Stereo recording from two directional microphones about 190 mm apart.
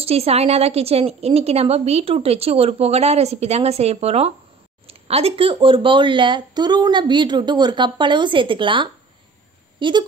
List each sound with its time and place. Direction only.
0.0 s a woman's voice: 30° right (ahead or behind)